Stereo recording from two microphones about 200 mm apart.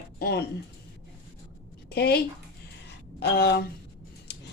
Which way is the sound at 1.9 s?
55° left (ahead or behind).